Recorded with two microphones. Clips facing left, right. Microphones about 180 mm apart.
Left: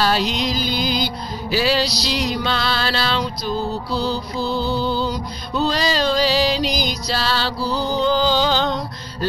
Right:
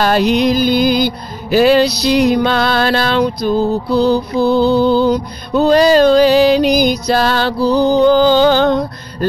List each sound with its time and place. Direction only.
0.0 s music: 55° right (ahead or behind)